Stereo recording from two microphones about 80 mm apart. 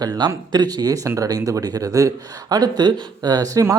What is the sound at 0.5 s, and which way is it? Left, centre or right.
Speech, right.